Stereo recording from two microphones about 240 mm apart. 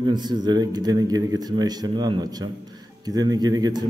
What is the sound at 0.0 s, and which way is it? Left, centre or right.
A man's voice, centre.